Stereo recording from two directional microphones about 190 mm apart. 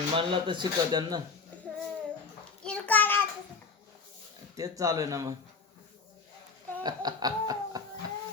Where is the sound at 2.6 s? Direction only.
10° left (ahead or behind).